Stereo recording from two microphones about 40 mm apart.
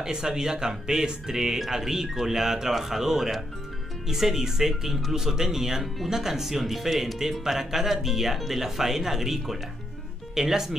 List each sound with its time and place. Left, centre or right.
0.0 s speech: centre